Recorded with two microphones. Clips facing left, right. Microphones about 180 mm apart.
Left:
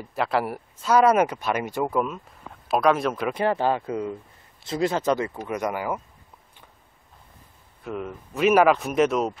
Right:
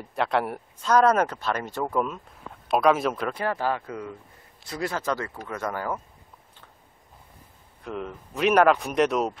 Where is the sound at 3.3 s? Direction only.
25° left (ahead or behind).